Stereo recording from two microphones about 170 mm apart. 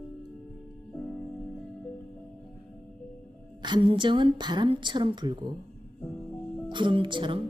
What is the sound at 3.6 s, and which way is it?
A woman's voice, 25° right (ahead or behind).